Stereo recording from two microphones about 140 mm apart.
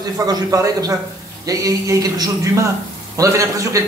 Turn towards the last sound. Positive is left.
turn(degrees=-20)  # may be behind; listen again after turning